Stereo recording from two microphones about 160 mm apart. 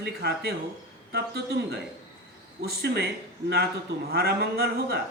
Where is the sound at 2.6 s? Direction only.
85° right.